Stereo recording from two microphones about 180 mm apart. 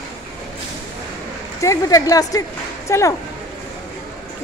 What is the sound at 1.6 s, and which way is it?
Speech, 20° left (ahead or behind).